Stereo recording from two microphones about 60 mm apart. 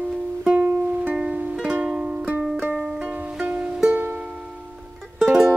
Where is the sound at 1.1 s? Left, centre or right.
Centre.